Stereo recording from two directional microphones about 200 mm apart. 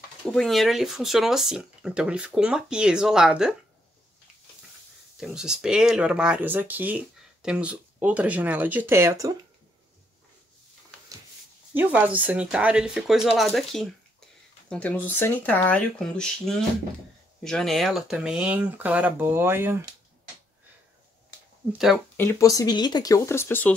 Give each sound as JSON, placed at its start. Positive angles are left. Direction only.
{"t": 0.2, "sound": "speech", "side_deg": 5}
{"t": 5.1, "sound": "speech", "side_deg": 0}
{"t": 11.7, "sound": "speech", "side_deg": -10}
{"t": 22.1, "sound": "speech", "side_deg": 15}